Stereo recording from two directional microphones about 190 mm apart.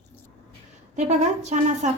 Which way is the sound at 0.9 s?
35° right (ahead or behind).